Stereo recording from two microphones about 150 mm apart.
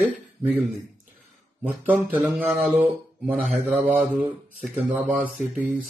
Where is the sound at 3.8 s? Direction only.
60° right (ahead or behind).